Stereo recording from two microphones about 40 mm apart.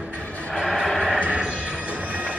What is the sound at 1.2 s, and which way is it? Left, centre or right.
Music, right.